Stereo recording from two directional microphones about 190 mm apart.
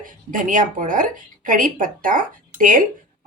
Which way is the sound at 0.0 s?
45° right (ahead or behind).